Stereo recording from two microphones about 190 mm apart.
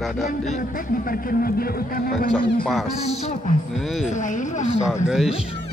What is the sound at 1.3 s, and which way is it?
Speech, 50° left (ahead or behind).